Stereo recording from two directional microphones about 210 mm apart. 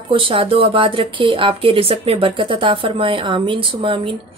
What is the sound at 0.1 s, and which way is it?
A woman's voice, 25° right (ahead or behind).